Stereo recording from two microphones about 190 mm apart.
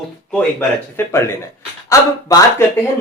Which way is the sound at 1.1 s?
15° left (ahead or behind).